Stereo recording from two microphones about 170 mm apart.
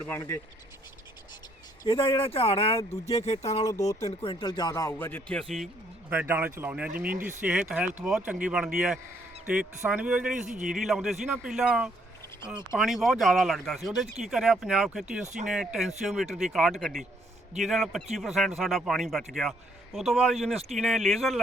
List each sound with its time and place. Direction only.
0.0 s speech: 15° left (ahead or behind)
1.8 s speech: 30° left (ahead or behind)
2.7 s speech: 20° left (ahead or behind)
4.0 s speech: 30° left (ahead or behind); by 5.6 s 5° left (ahead or behind)
6.1 s speech: 10° right (ahead or behind)
6.9 s speech: 60° right (ahead or behind)
7.4 s speech: 5° right (ahead or behind)